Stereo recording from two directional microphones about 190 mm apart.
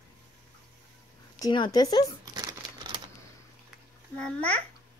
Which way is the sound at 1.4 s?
25° left (ahead or behind).